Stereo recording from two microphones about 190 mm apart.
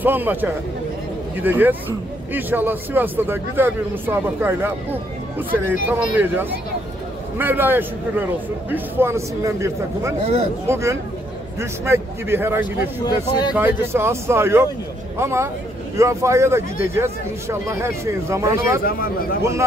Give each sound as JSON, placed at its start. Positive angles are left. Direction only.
{"t": 0.0, "sound": "speech", "side_deg": -10}
{"t": 10.2, "sound": "speech", "side_deg": -35}
{"t": 10.7, "sound": "speech", "side_deg": -15}
{"t": 13.0, "sound": "speech", "side_deg": 20}
{"t": 13.6, "sound": "speech", "side_deg": -10}
{"t": 18.9, "sound": "a man's voice", "side_deg": 50}